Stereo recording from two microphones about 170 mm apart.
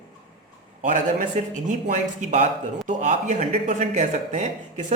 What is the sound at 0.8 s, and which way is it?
Speech, 45° right (ahead or behind).